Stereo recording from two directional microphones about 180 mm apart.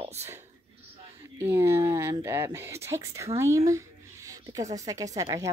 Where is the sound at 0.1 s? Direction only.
15° right (ahead or behind).